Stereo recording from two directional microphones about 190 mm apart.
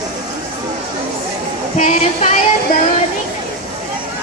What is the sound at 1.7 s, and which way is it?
Speech, 35° left (ahead or behind).